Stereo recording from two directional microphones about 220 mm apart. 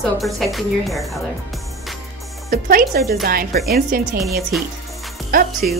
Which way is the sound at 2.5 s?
40° right (ahead or behind).